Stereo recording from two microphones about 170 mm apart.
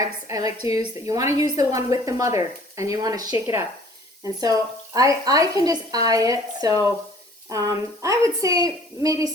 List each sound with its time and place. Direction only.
0.0 s a woman's voice: 20° right (ahead or behind)